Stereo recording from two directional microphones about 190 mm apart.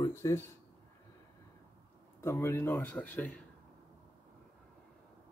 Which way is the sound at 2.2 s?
15° left (ahead or behind).